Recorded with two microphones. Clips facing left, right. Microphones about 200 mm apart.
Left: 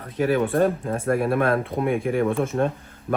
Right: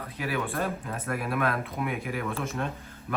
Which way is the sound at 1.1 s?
30° left (ahead or behind).